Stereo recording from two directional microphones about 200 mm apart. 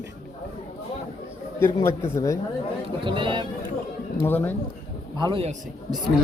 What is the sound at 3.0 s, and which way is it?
Speech, 25° right (ahead or behind).